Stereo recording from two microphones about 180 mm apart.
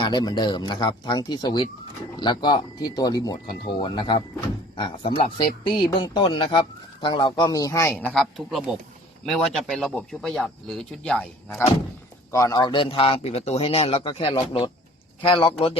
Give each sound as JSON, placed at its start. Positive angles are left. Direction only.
{"t": 0.0, "sound": "speech", "side_deg": 25}
{"t": 12.3, "sound": "a man's voice", "side_deg": 20}